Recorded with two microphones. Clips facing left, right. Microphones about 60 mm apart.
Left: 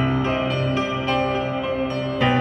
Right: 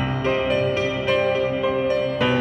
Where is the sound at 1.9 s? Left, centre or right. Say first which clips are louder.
Right 1 dB; left.